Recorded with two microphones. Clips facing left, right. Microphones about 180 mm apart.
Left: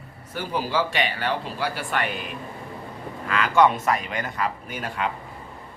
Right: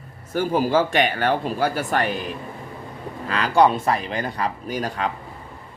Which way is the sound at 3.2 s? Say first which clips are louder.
Right 2 dB; 35° right (ahead or behind).